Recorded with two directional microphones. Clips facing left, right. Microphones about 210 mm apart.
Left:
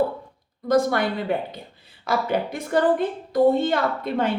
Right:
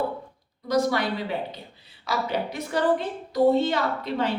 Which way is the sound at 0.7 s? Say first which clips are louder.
Left 3 dB; 50° left (ahead or behind).